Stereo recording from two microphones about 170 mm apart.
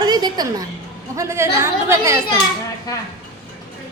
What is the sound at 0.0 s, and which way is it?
A woman's voice, 25° right (ahead or behind).